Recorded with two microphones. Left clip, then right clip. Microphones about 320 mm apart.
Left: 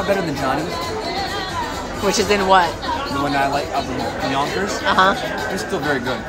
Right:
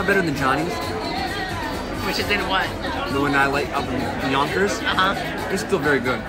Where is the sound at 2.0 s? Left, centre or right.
Centre.